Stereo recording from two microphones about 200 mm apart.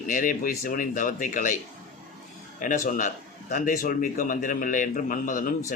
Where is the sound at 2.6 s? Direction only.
40° left (ahead or behind).